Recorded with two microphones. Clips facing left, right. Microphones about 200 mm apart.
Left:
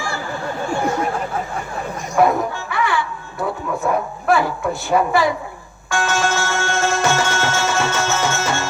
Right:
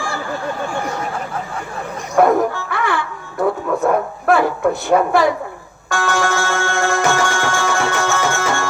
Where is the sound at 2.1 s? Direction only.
55° right (ahead or behind).